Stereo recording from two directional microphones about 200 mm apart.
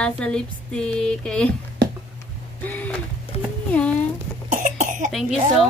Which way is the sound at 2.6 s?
5° left (ahead or behind).